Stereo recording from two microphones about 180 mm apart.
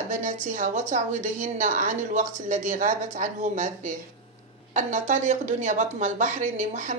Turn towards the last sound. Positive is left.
turn(degrees=-45)  # may be behind; listen again after turning